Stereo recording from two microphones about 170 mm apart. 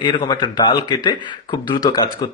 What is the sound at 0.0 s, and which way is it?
Speech, 25° left (ahead or behind).